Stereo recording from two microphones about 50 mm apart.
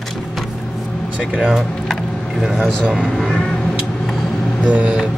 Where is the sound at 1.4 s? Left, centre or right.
Centre.